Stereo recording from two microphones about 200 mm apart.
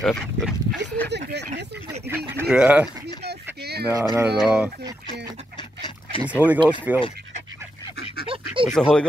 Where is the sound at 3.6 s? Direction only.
55° right (ahead or behind).